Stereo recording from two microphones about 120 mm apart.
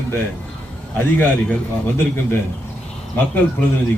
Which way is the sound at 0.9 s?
15° left (ahead or behind).